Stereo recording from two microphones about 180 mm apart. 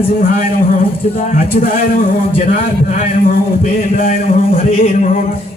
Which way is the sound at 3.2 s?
50° left (ahead or behind).